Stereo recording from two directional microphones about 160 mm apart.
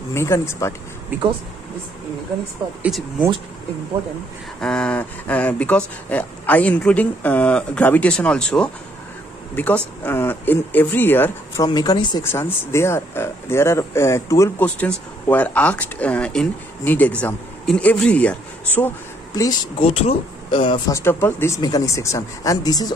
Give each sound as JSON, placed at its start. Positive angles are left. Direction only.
{"t": 0.1, "sound": "speech", "side_deg": 15}
{"t": 1.1, "sound": "speech", "side_deg": -10}
{"t": 4.6, "sound": "speech", "side_deg": 5}
{"t": 10.0, "sound": "speech", "side_deg": 10}
{"t": 19.3, "sound": "speech", "side_deg": 20}
{"t": 19.8, "sound": "speech", "side_deg": 35}
{"t": 20.9, "sound": "speech", "side_deg": 15}